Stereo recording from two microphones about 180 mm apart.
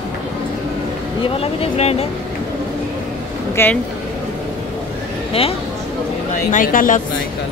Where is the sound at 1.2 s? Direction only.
30° left (ahead or behind).